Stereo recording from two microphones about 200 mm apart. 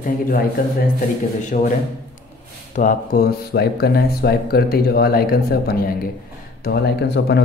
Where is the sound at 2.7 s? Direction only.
45° left (ahead or behind).